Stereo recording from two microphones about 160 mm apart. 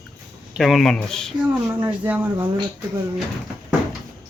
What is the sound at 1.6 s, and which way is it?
Speech, 15° right (ahead or behind).